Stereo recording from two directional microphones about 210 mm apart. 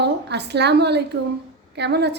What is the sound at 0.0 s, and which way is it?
A woman's voice, 55° right (ahead or behind).